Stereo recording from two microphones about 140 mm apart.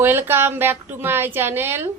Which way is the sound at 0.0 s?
15° right (ahead or behind).